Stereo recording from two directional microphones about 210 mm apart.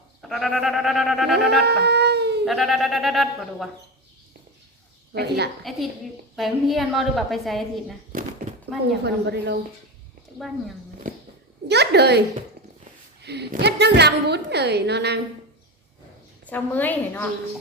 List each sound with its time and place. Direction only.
0.2 s a woman's voice: centre (ahead or behind)
1.4 s cat: 50° right (ahead or behind)
2.4 s speech: centre (ahead or behind)
5.1 s a woman's voice: 50° right (ahead or behind)
5.7 s a woman's voice: centre (ahead or behind)
9.0 s a woman's voice: 55° right (ahead or behind)
11.7 s a woman's voice: 50° right (ahead or behind)
13.2 s a woman's voice: 50° right (ahead or behind)
16.5 s a woman's voice: 10° left (ahead or behind)